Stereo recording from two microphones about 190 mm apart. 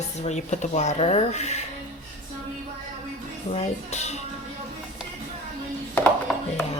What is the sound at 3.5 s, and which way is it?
Speech, 35° left (ahead or behind).